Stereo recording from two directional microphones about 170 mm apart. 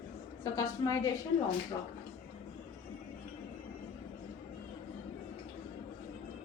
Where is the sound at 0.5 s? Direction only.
20° left (ahead or behind).